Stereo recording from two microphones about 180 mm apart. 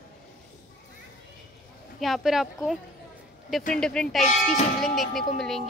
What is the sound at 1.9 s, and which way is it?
Speech, centre (ahead or behind).